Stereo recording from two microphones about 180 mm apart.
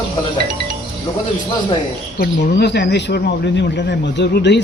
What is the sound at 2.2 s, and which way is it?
Speech, 65° left (ahead or behind).